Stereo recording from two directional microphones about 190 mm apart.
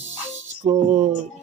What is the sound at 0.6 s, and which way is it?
Music, 35° right (ahead or behind).